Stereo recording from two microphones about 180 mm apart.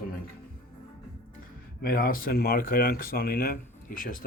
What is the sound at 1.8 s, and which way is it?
Speech, 55° left (ahead or behind).